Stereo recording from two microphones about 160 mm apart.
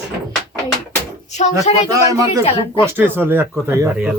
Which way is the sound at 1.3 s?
45° left (ahead or behind).